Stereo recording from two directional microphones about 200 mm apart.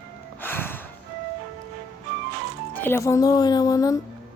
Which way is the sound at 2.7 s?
10° left (ahead or behind).